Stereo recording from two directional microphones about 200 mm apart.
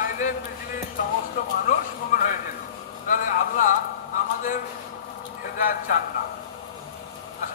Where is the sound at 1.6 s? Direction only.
45° left (ahead or behind).